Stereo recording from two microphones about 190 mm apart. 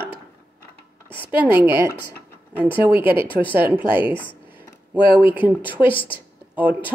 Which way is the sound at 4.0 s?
25° left (ahead or behind).